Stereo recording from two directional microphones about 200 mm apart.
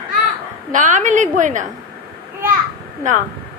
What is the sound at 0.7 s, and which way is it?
Speech, 40° right (ahead or behind).